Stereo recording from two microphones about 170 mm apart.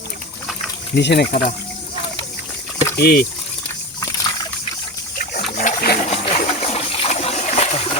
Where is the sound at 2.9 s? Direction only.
70° left (ahead or behind).